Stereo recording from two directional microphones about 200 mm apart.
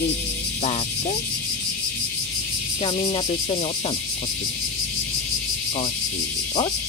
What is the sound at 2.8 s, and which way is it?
Speech, 25° left (ahead or behind).